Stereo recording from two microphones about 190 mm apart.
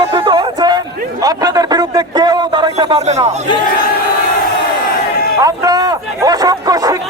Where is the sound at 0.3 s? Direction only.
20° right (ahead or behind).